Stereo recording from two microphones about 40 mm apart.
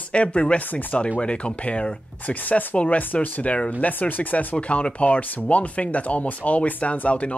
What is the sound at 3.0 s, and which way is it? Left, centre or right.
Speech, left.